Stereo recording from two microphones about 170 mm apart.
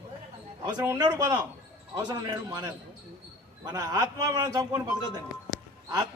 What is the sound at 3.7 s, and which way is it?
A man's voice, 25° right (ahead or behind).